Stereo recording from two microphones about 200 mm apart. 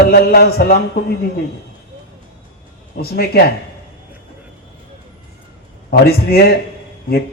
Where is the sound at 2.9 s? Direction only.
50° left (ahead or behind).